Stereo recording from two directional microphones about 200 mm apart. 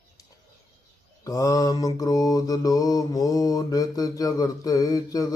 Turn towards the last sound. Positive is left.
turn(degrees=15)  # may be behind; listen again after turning